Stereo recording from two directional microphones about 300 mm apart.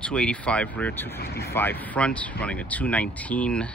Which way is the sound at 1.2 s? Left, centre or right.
Left.